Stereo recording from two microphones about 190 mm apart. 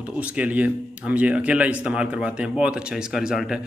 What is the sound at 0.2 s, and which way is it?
A man's voice, 5° right (ahead or behind).